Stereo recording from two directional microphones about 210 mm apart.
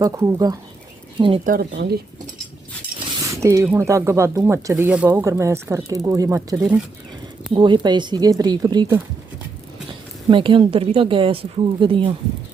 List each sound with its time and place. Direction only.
0.0 s speech: 15° right (ahead or behind)
1.5 s speech: 50° right (ahead or behind)
3.2 s a sound: 15° right (ahead or behind)
3.8 s a woman's voice: 15° right (ahead or behind)
10.2 s a woman's voice: 25° right (ahead or behind)